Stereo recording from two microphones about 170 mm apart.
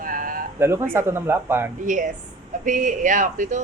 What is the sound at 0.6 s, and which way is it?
Speech, 15° right (ahead or behind).